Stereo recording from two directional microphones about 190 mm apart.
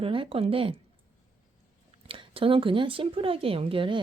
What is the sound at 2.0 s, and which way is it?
Speech, 30° right (ahead or behind).